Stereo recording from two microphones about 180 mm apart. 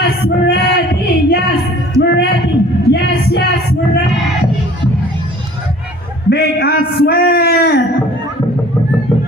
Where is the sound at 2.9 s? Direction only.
65° left (ahead or behind).